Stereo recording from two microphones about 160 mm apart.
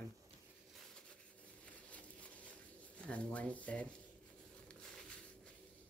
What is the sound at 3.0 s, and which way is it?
Speech, 5° left (ahead or behind).